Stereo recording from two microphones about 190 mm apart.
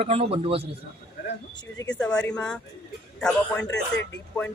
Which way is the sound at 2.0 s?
5° left (ahead or behind).